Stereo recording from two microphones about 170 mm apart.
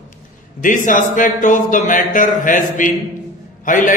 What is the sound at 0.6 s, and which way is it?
Speech, 50° left (ahead or behind).